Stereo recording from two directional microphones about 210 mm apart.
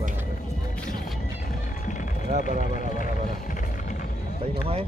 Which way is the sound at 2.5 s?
40° left (ahead or behind).